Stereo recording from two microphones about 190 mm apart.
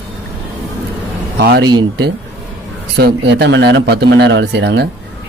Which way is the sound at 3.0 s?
60° right (ahead or behind).